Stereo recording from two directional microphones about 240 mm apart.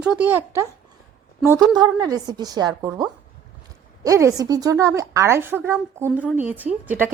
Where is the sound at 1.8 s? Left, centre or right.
Centre.